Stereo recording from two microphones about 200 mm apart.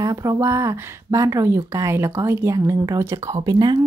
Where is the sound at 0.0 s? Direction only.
15° right (ahead or behind).